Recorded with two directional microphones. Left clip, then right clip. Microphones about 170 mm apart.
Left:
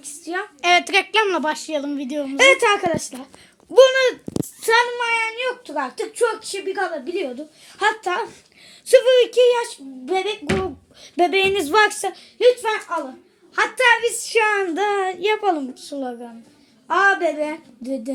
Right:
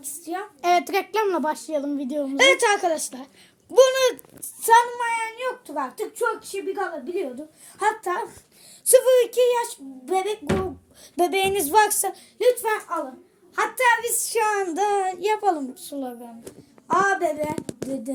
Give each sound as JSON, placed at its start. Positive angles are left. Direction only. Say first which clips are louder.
{"t": 0.0, "sound": "a woman's voice", "louder": "left 4 dB", "side_deg": 30}
{"t": 0.6, "sound": "a woman's voice", "louder": "left 4 dB", "side_deg": -10}
{"t": 2.4, "sound": "a woman's voice", "louder": "left 3 dB", "side_deg": 30}